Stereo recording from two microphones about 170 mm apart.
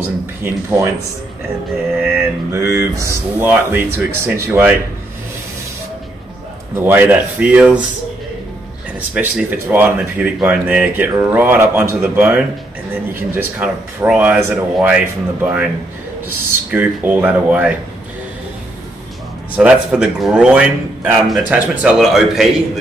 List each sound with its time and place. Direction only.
0.0 s speech: 15° right (ahead or behind)
2.5 s speech: 15° right (ahead or behind)
6.7 s speech: 10° right (ahead or behind)
9.1 s speech: 10° right (ahead or behind)
19.5 s a man's voice: 10° right (ahead or behind)